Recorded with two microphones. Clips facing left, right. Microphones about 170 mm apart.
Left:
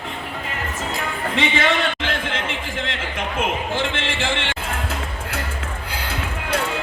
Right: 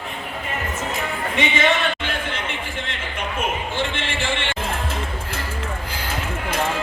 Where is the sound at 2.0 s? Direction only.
90° left.